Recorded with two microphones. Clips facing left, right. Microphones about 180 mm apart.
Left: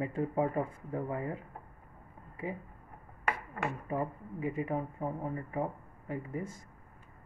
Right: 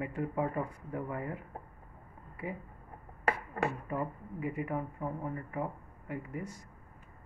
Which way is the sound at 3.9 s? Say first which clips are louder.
Left 1 dB; 25° left (ahead or behind).